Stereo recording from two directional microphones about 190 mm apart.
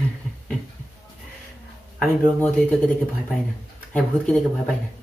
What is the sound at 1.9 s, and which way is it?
Speech, 5° left (ahead or behind).